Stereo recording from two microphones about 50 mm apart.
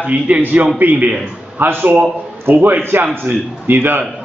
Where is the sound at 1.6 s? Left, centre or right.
Right.